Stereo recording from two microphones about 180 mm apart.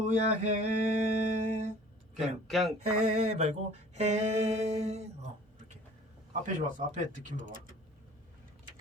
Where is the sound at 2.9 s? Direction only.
40° right (ahead or behind).